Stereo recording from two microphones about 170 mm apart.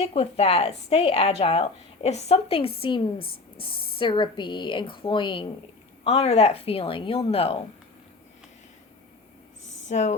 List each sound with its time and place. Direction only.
0.0 s a woman's voice: 35° left (ahead or behind)
3.2 s speech: 65° left (ahead or behind)
3.6 s a woman's voice: 30° left (ahead or behind)
9.9 s a woman's voice: 40° left (ahead or behind)